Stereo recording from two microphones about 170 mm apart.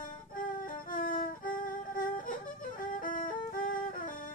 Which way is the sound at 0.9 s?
55° left (ahead or behind).